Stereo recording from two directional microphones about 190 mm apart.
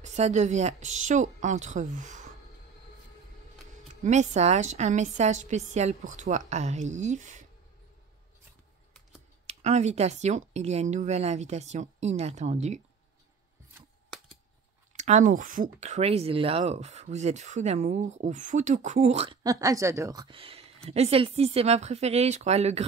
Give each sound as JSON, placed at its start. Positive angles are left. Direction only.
{"t": 0.0, "sound": "speech", "side_deg": -35}
{"t": 4.0, "sound": "speech", "side_deg": -40}
{"t": 9.5, "sound": "speech", "side_deg": -35}
{"t": 14.9, "sound": "speech", "side_deg": -40}
{"t": 19.4, "sound": "speech", "side_deg": -20}